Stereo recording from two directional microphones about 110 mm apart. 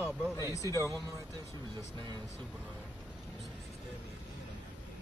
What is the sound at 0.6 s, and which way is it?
Speech, 30° right (ahead or behind).